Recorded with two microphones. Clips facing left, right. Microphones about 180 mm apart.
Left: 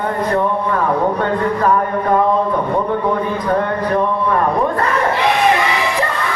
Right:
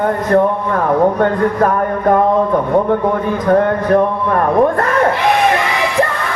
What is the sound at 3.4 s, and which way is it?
A man's voice, 55° right (ahead or behind).